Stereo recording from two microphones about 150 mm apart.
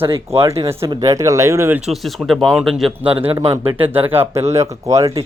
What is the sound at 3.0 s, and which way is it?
Speech, 35° right (ahead or behind).